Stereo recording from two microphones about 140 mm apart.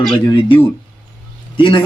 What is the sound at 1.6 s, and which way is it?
Speech, 35° left (ahead or behind).